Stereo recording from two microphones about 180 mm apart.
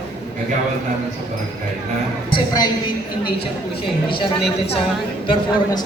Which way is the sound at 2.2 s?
25° left (ahead or behind).